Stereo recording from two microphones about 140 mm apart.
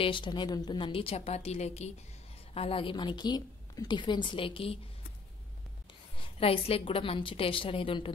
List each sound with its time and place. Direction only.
0.0 s a woman's voice: 35° left (ahead or behind)
6.1 s a woman's voice: 40° left (ahead or behind)